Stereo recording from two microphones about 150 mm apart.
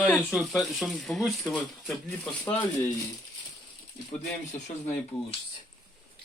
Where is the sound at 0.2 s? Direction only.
Centre (ahead or behind).